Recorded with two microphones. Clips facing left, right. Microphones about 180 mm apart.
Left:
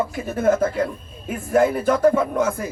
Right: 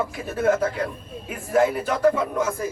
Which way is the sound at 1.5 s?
50° left (ahead or behind).